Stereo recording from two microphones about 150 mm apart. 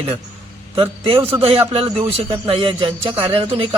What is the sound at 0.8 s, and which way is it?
A man's voice, 35° right (ahead or behind).